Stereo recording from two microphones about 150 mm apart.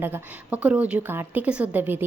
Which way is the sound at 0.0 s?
10° right (ahead or behind).